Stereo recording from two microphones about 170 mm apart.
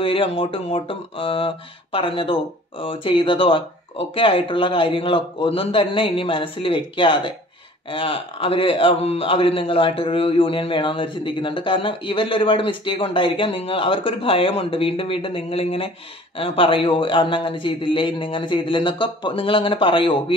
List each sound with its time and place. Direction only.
0.0 s a man's voice: 30° left (ahead or behind)